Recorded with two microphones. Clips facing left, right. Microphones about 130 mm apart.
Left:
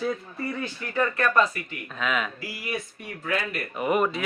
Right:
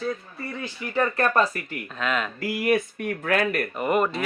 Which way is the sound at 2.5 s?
55° right (ahead or behind).